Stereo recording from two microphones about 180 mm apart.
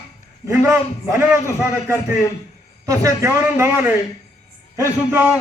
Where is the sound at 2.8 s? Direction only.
20° right (ahead or behind).